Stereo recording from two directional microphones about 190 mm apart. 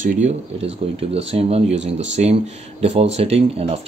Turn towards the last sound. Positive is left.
turn(degrees=-30)  # may be behind; listen again after turning